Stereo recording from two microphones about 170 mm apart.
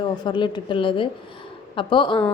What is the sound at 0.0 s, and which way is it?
A woman's voice, 25° left (ahead or behind).